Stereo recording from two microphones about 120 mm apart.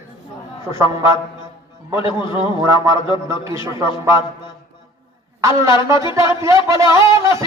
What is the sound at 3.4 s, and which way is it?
Speech, 25° right (ahead or behind).